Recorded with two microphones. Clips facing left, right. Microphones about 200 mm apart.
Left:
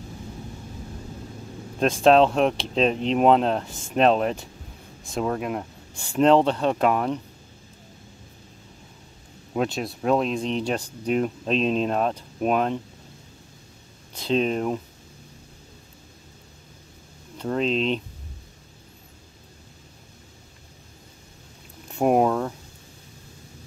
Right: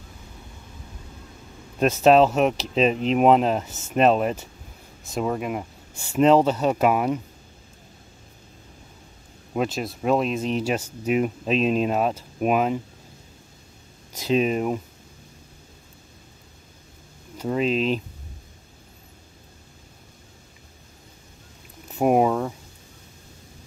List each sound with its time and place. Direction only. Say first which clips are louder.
1.8 s speech: right 1 dB; 5° right (ahead or behind)
9.5 s speech: even; centre (ahead or behind)
14.1 s speech: right 1 dB; 5° right (ahead or behind)
17.4 s speech: right 1 dB; 5° right (ahead or behind)
21.8 s a sound: right 1 dB; 5° right (ahead or behind)